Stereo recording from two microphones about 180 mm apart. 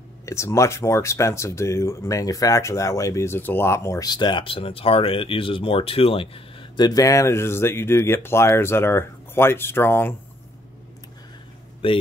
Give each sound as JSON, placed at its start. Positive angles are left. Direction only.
{"t": 0.2, "sound": "speech", "side_deg": 15}
{"t": 11.8, "sound": "a man's voice", "side_deg": 30}